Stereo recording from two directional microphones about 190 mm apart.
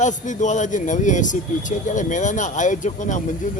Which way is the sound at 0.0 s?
40° left (ahead or behind).